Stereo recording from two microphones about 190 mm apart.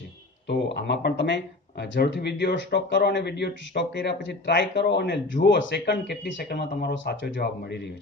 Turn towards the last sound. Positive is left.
turn(degrees=60)  # may be behind; listen again after turning